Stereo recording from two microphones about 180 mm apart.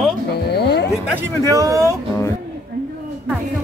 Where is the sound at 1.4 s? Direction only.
20° right (ahead or behind).